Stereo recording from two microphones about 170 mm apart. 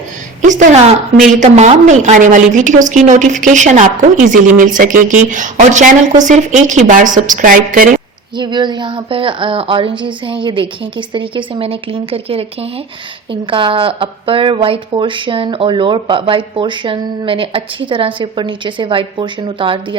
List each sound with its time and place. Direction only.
0.4 s speech: 45° right (ahead or behind)
8.4 s a woman's voice: 25° right (ahead or behind)
13.5 s speech: 30° right (ahead or behind)